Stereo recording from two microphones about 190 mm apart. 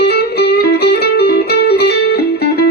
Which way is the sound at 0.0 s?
55° left (ahead or behind).